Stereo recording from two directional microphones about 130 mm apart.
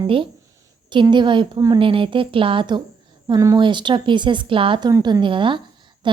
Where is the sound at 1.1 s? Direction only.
40° right (ahead or behind).